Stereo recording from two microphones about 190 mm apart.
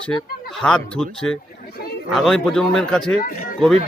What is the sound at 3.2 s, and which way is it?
Speech, 50° left (ahead or behind).